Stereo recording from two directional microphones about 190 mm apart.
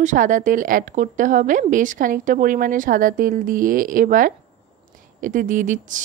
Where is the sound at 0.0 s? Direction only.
40° right (ahead or behind).